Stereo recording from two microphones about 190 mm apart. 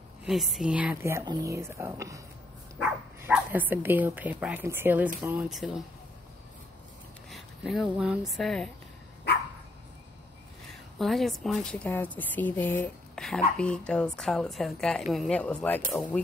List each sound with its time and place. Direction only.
0.2 s speech: centre (ahead or behind)
7.2 s speech: centre (ahead or behind)
9.3 s dog: 60° left (ahead or behind)
10.7 s a woman's voice: centre (ahead or behind)